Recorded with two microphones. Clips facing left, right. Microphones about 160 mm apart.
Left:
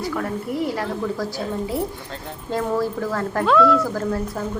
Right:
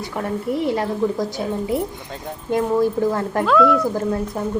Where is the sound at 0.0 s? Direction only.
25° right (ahead or behind).